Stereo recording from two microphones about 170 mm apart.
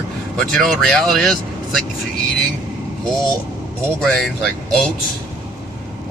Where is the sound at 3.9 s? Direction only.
Centre (ahead or behind).